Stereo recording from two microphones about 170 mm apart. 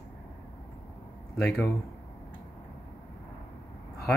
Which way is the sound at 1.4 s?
5° left (ahead or behind).